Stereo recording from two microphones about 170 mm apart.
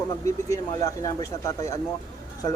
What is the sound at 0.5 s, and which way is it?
Speech, 20° left (ahead or behind).